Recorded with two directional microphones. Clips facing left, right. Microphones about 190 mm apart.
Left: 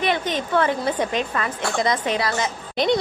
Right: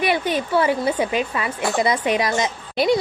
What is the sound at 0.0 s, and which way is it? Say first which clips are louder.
A woman's voice: right 2 dB; 10° right (ahead or behind).